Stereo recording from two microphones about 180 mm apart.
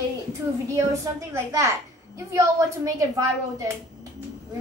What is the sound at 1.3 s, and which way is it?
A woman's voice, 20° right (ahead or behind).